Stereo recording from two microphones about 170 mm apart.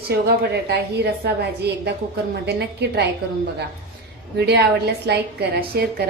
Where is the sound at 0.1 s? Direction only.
75° right (ahead or behind).